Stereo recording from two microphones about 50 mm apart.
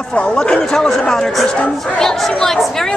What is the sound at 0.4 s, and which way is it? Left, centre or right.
A child's voice, centre.